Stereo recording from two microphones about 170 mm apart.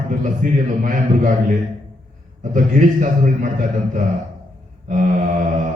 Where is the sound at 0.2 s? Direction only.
50° right (ahead or behind).